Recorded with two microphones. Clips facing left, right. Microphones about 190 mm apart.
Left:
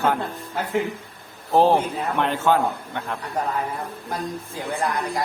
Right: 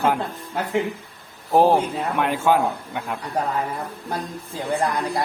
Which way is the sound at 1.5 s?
10° right (ahead or behind).